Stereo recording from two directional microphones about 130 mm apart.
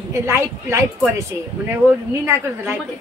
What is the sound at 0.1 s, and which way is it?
Speech, 20° right (ahead or behind).